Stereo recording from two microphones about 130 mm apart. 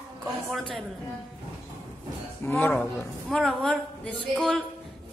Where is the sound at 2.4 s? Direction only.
15° left (ahead or behind).